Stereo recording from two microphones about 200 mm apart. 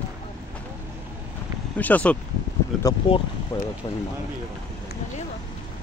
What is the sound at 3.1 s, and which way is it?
Speech, 25° left (ahead or behind).